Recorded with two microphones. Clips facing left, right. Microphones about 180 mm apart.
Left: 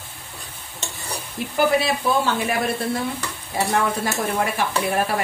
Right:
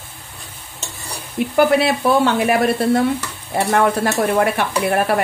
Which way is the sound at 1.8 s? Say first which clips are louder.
Right 5 dB; 65° right (ahead or behind).